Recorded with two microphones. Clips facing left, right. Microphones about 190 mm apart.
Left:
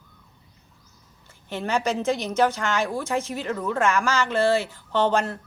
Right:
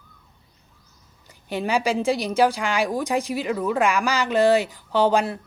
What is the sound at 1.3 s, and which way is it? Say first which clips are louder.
A woman's voice: right 3 dB; 15° right (ahead or behind).